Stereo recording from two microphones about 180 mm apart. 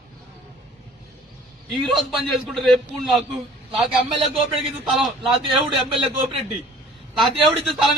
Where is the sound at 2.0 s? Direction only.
Centre (ahead or behind).